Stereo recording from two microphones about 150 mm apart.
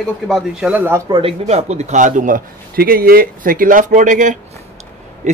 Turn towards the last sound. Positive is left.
turn(degrees=-50)  # may be behind; listen again after turning